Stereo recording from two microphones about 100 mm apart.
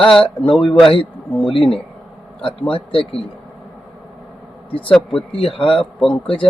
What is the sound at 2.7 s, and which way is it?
Speech, 65° left (ahead or behind).